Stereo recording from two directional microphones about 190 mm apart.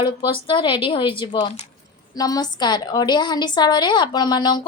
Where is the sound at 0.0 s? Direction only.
25° left (ahead or behind).